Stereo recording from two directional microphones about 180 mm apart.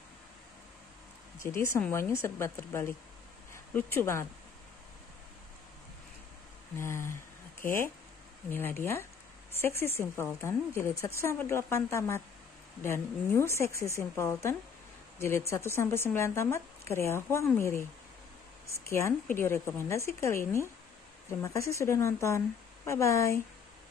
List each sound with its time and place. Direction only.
1.4 s speech: 15° left (ahead or behind)
6.8 s speech: 15° left (ahead or behind)
8.5 s speech: 10° left (ahead or behind)